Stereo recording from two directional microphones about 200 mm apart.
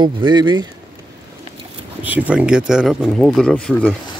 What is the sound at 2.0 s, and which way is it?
Speech, 10° right (ahead or behind).